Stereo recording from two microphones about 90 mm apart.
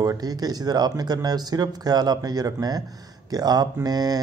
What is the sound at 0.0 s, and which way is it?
Speech, 45° right (ahead or behind).